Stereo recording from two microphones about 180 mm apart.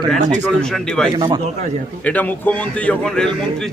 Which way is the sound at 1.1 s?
30° right (ahead or behind).